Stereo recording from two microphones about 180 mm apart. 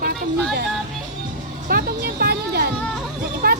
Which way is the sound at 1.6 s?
55° right (ahead or behind).